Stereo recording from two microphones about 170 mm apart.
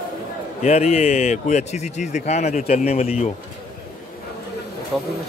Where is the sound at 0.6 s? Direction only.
40° left (ahead or behind).